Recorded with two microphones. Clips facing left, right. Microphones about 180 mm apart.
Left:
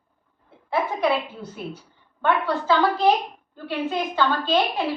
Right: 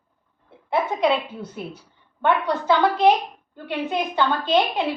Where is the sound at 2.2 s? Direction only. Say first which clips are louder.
Right 1 dB; 20° right (ahead or behind).